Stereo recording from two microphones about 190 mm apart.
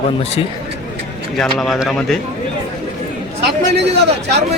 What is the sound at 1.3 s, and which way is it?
Speech, centre (ahead or behind).